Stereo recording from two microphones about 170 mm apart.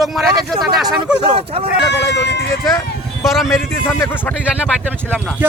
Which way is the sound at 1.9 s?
90° left.